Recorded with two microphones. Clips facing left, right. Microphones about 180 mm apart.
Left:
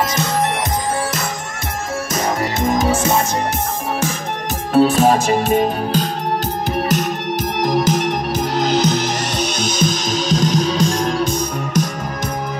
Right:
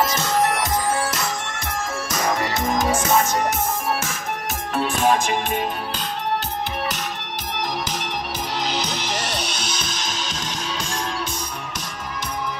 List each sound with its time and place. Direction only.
4.7 s music: 40° left (ahead or behind)
7.5 s music: 45° left (ahead or behind)